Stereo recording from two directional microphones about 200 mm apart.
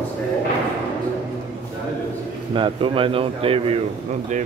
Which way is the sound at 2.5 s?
25° right (ahead or behind).